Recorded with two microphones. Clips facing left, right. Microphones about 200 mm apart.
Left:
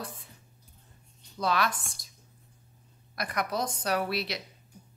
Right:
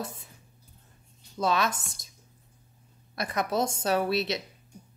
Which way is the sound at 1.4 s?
25° right (ahead or behind).